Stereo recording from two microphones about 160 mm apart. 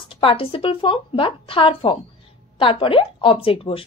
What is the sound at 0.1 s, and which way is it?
Speech, 35° left (ahead or behind).